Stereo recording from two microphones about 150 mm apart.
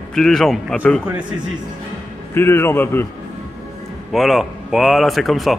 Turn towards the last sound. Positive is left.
turn(degrees=0)  # may be behind; listen again after turning